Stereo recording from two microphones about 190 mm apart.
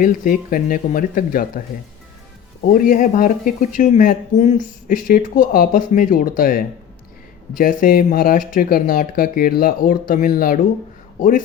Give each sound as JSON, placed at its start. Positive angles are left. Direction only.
{"t": 0.0, "sound": "speech", "side_deg": 45}
{"t": 2.6, "sound": "speech", "side_deg": 45}
{"t": 7.6, "sound": "speech", "side_deg": 50}